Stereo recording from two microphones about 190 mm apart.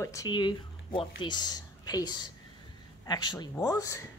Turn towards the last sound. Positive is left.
turn(degrees=20)  # may be behind; listen again after turning